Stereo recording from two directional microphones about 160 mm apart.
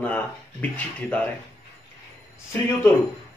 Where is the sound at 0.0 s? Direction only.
10° left (ahead or behind).